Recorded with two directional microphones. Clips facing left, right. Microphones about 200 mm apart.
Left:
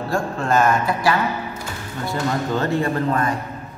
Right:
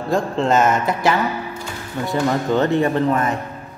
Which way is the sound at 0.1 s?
20° right (ahead or behind).